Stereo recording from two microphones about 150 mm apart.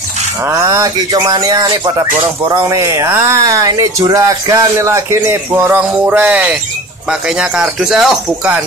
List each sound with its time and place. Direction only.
0.5 s speech: 25° right (ahead or behind); by 8.6 s 5° right (ahead or behind)